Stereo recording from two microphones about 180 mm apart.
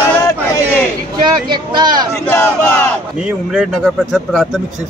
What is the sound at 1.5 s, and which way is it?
Speech, 25° right (ahead or behind).